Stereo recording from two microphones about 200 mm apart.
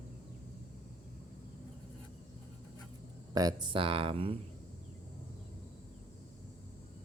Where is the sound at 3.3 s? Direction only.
20° right (ahead or behind).